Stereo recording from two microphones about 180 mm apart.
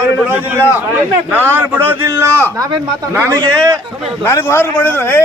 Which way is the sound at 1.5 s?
10° right (ahead or behind).